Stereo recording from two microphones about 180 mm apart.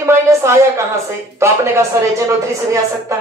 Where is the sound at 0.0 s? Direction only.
15° right (ahead or behind).